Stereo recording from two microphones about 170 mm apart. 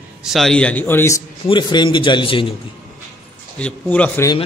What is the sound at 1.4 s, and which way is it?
A man's voice, 25° left (ahead or behind).